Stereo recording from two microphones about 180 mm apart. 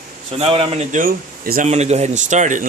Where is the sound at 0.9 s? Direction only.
50° right (ahead or behind).